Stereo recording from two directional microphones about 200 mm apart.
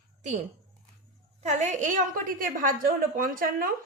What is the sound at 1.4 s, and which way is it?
A woman's voice, 35° right (ahead or behind).